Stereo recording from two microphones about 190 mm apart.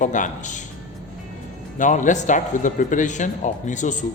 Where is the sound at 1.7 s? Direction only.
40° left (ahead or behind).